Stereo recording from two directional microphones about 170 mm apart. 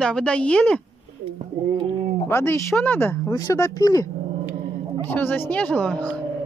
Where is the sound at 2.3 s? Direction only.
15° left (ahead or behind).